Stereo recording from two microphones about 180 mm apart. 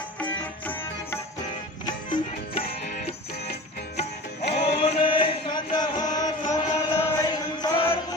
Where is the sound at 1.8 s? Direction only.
30° left (ahead or behind).